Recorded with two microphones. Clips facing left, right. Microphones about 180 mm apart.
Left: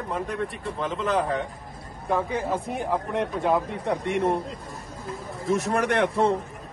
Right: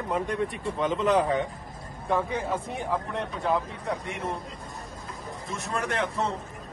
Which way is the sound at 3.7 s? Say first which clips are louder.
Left 7 dB; 70° left (ahead or behind).